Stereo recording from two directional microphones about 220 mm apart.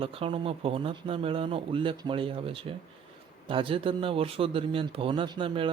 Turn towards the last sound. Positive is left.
turn(degrees=-20)  # may be behind; listen again after turning